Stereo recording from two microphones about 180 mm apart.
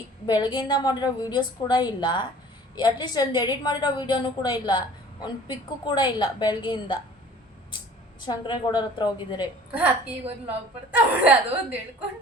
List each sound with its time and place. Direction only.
0.3 s a woman's voice: 25° left (ahead or behind)
8.2 s a woman's voice: 25° left (ahead or behind)
10.9 s speech: 10° right (ahead or behind)